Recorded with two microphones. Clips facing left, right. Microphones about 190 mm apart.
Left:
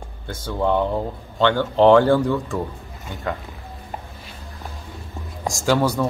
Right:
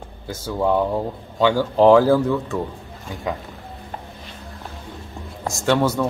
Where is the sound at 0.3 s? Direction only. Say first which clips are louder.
Right 1 dB; 5° right (ahead or behind).